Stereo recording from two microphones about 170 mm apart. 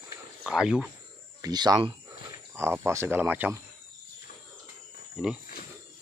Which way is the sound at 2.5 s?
15° right (ahead or behind).